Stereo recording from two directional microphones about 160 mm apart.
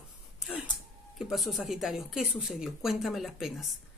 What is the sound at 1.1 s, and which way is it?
Speech, centre (ahead or behind).